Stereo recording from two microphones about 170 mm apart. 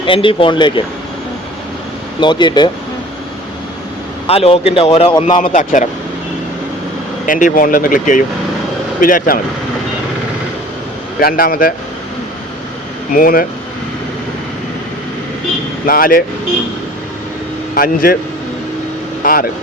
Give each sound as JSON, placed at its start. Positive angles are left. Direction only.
{"t": 0.0, "sound": "speech", "side_deg": 30}
{"t": 2.2, "sound": "speech", "side_deg": 25}
{"t": 4.3, "sound": "speech", "side_deg": 35}
{"t": 5.4, "sound": "speech", "side_deg": 50}
{"t": 7.3, "sound": "speech", "side_deg": 50}
{"t": 11.2, "sound": "a man's voice", "side_deg": 60}
{"t": 13.1, "sound": "a man's voice", "side_deg": 55}
{"t": 15.9, "sound": "a man's voice", "side_deg": 55}
{"t": 17.7, "sound": "a man's voice", "side_deg": 60}
{"t": 19.2, "sound": "speech", "side_deg": 55}